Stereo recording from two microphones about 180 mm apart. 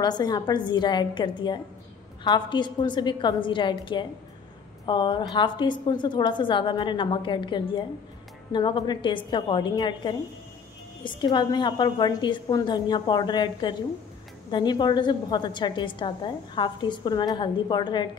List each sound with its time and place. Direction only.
0.0 s a woman's voice: 25° left (ahead or behind)